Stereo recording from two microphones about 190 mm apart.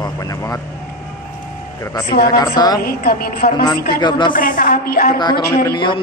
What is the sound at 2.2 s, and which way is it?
Speech, 20° left (ahead or behind).